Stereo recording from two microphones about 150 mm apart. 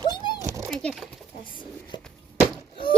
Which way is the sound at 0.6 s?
5° left (ahead or behind).